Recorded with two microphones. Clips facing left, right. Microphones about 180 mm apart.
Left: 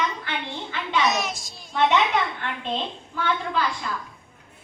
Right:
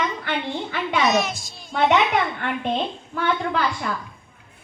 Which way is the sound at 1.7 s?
60° right (ahead or behind).